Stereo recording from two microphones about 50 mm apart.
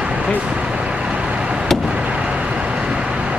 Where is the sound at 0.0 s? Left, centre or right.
Right.